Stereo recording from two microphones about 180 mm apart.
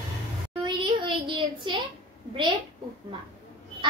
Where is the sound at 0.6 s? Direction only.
25° right (ahead or behind).